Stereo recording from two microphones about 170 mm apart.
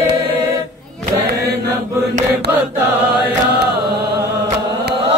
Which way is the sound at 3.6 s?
70° right (ahead or behind).